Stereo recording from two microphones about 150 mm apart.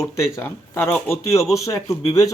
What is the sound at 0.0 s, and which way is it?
Speech, 20° left (ahead or behind).